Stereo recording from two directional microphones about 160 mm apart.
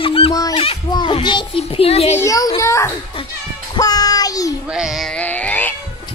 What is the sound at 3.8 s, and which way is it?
Child singing, 25° left (ahead or behind).